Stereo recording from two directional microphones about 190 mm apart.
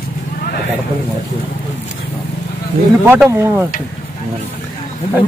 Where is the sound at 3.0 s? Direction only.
10° right (ahead or behind).